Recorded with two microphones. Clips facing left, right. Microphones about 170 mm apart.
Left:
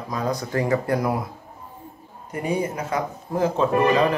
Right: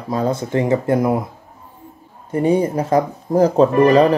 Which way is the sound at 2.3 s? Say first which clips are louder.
Right 9 dB; 30° right (ahead or behind).